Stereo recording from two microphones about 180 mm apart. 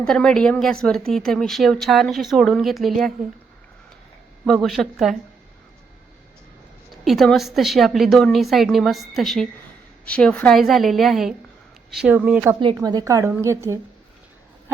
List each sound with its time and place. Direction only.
0.0 s speech: 5° left (ahead or behind)
4.4 s speech: centre (ahead or behind)
7.0 s a woman's voice: centre (ahead or behind)
12.5 s a woman's voice: 25° right (ahead or behind)